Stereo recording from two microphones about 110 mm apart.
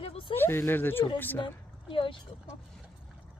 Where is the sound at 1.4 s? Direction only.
50° left (ahead or behind).